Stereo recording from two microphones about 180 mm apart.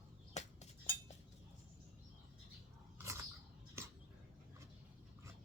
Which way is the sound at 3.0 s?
15° right (ahead or behind).